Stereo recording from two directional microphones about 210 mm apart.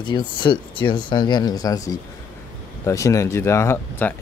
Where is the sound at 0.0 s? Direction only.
20° left (ahead or behind).